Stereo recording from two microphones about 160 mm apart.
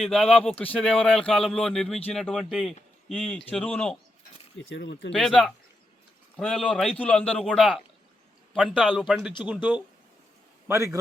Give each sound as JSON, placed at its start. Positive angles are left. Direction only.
{"t": 0.0, "sound": "speech", "side_deg": 5}
{"t": 4.8, "sound": "speech", "side_deg": 90}
{"t": 5.1, "sound": "speech", "side_deg": 0}